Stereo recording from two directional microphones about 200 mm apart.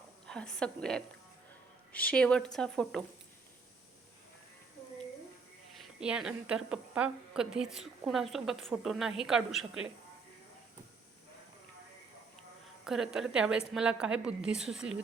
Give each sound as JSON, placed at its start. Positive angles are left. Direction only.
{"t": 0.3, "sound": "a woman's voice", "side_deg": 5}
{"t": 5.7, "sound": "a woman's voice", "side_deg": 0}
{"t": 12.8, "sound": "a woman's voice", "side_deg": 0}